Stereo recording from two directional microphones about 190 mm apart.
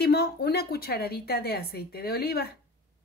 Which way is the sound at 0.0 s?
55° left (ahead or behind).